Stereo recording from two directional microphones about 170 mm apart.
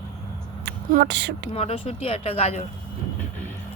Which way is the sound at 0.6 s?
65° right (ahead or behind).